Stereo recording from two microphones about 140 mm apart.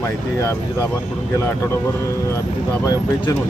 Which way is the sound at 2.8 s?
25° left (ahead or behind).